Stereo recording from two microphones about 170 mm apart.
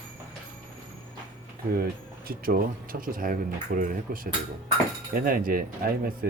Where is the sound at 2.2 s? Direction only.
60° right (ahead or behind).